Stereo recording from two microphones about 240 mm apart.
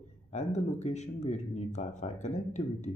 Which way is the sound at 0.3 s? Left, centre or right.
Left.